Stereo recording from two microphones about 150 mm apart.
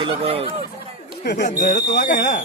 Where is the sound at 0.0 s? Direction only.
40° right (ahead or behind).